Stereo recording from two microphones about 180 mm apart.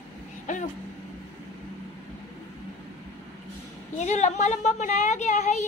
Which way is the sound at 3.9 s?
40° left (ahead or behind).